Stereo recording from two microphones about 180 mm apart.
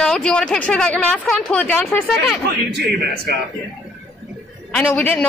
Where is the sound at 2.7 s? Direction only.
60° right (ahead or behind).